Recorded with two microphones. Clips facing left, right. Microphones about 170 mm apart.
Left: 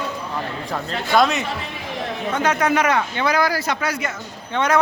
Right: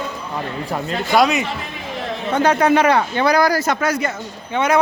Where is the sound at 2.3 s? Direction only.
30° right (ahead or behind).